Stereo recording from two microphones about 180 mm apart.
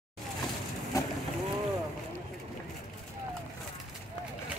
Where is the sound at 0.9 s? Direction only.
20° left (ahead or behind).